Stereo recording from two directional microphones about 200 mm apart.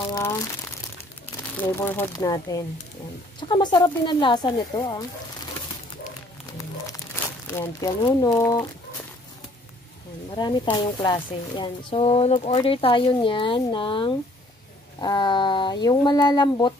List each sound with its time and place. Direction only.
1.6 s speech: 10° left (ahead or behind)
7.4 s speech: 10° left (ahead or behind)
10.3 s speech: 20° left (ahead or behind)